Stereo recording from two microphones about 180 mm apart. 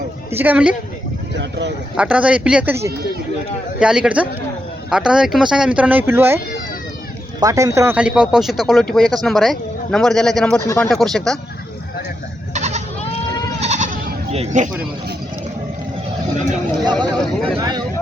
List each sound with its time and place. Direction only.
0.3 s speech: 10° right (ahead or behind)
1.4 s speech: 75° right (ahead or behind)
2.0 s speech: 5° right (ahead or behind)
12.5 s goat: 40° right (ahead or behind)
16.8 s speech: 25° right (ahead or behind)